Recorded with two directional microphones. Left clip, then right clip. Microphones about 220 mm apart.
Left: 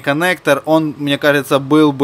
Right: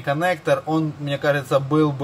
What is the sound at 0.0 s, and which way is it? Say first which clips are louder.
Speech: left 6 dB; 50° left (ahead or behind).